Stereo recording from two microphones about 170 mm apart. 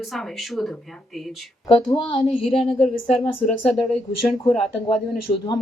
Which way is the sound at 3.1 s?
5° left (ahead or behind).